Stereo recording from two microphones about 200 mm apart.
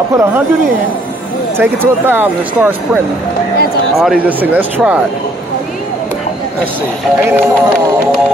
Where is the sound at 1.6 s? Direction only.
10° right (ahead or behind).